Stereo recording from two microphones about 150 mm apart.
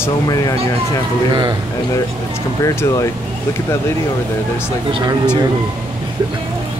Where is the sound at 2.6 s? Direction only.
20° left (ahead or behind).